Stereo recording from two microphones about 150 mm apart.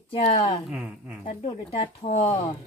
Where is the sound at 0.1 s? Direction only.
40° left (ahead or behind).